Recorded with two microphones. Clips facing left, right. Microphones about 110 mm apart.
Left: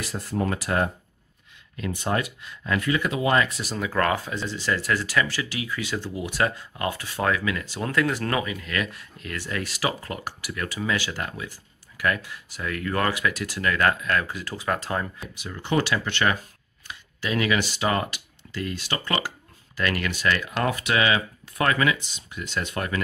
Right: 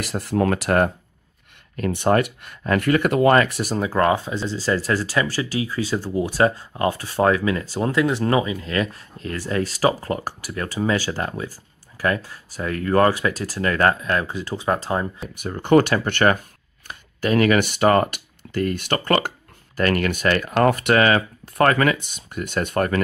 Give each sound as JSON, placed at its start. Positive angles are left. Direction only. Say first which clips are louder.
{"t": 0.0, "sound": "speech", "louder": "right 6 dB", "side_deg": -65}
{"t": 3.6, "sound": "speech", "louder": "right 5 dB", "side_deg": -35}
{"t": 7.9, "sound": "speech", "louder": "right 5 dB", "side_deg": -20}
{"t": 15.4, "sound": "speech", "louder": "right 9 dB", "side_deg": -50}